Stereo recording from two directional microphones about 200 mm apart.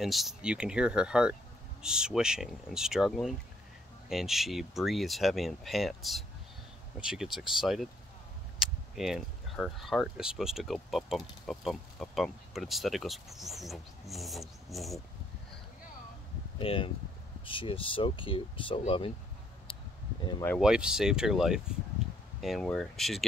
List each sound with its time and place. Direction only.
0.0 s speech: centre (ahead or behind)
16.5 s speech: 25° left (ahead or behind)
19.7 s a sound: 20° left (ahead or behind)
20.6 s speech: 5° right (ahead or behind)